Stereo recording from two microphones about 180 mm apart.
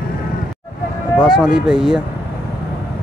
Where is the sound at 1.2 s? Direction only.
5° right (ahead or behind).